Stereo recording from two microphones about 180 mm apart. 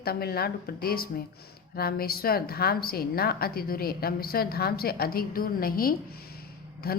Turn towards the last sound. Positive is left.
turn(degrees=55)  # may be behind; listen again after turning